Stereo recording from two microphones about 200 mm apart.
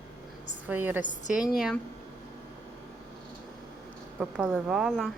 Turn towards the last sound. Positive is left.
turn(degrees=0)  # may be behind; listen again after turning